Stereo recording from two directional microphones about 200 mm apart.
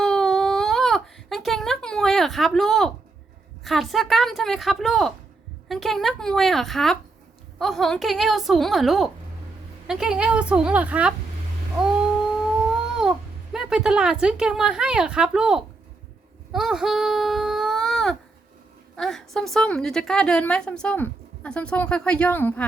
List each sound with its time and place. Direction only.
0.0 s baby cry: centre (ahead or behind)
3.6 s a woman's voice: centre (ahead or behind)
13.0 s a woman's voice: centre (ahead or behind)
16.5 s a sound: centre (ahead or behind)
18.9 s a woman's voice: centre (ahead or behind)